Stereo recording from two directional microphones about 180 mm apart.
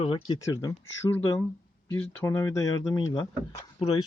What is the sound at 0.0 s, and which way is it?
Speech, 30° left (ahead or behind).